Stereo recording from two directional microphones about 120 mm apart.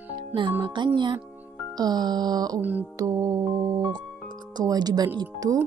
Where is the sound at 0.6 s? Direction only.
45° right (ahead or behind).